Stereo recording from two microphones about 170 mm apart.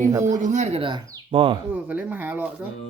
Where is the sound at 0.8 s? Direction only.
30° right (ahead or behind).